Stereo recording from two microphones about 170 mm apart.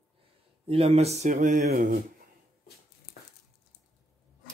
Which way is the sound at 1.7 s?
60° right (ahead or behind).